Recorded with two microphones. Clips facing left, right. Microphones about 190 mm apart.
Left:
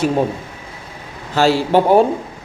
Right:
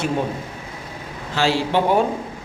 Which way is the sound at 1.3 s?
45° left (ahead or behind).